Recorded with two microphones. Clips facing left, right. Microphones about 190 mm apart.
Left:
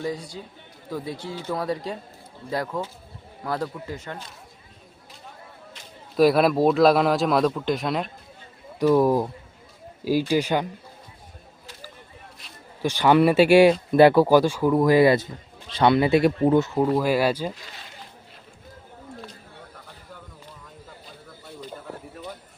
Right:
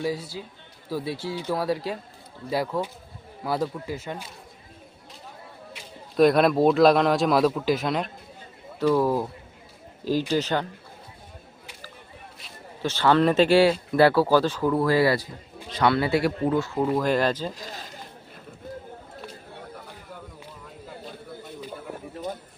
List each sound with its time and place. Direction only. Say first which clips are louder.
0.0 s a man's voice: right 1 dB; 5° right (ahead or behind)
6.1 s a man's voice: even; 5° left (ahead or behind)
8.8 s speech: left 3 dB; 15° left (ahead or behind)
12.8 s speech: left 2 dB; 15° left (ahead or behind)
16.8 s speech: left 2 dB; 5° left (ahead or behind)
17.5 s run: right 4 dB; 40° right (ahead or behind)
21.4 s a sound: left 1 dB; 10° right (ahead or behind)